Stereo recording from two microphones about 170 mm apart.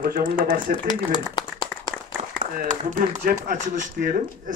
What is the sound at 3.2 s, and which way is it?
Speech, 60° right (ahead or behind).